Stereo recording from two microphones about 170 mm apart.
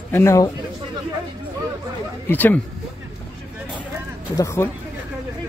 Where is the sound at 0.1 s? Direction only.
15° left (ahead or behind).